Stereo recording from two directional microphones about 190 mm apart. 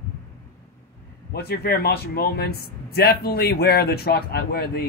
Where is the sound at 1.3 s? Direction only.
55° left (ahead or behind).